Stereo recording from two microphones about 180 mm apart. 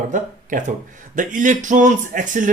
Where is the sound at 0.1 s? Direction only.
45° right (ahead or behind).